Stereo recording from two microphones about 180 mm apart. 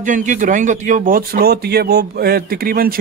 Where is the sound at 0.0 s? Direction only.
45° right (ahead or behind).